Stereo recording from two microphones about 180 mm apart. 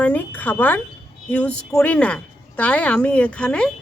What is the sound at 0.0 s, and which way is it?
A woman's voice, 10° left (ahead or behind).